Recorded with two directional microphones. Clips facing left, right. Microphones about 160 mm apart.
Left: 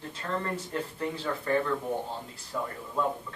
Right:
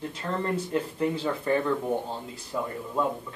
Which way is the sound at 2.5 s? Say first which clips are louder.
Right 3 dB; 20° right (ahead or behind).